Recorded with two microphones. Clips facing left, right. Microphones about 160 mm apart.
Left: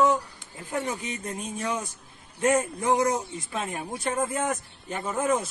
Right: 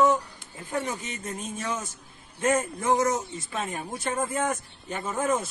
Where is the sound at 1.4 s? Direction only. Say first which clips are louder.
Left 2 dB; 10° left (ahead or behind).